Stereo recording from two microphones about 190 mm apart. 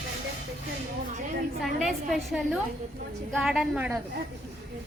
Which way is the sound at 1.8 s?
5° right (ahead or behind).